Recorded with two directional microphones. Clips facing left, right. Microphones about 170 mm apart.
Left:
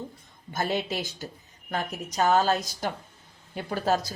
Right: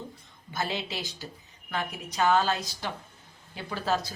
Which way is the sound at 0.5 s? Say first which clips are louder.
Left 4 dB; 50° left (ahead or behind).